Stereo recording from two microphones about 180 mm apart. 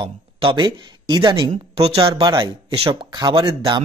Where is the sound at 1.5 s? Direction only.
35° right (ahead or behind).